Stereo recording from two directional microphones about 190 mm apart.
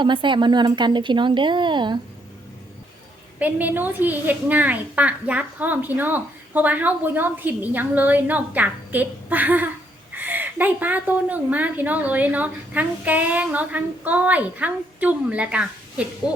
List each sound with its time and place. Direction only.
0.0 s a woman's voice: 25° right (ahead or behind)
3.3 s a woman's voice: 10° right (ahead or behind)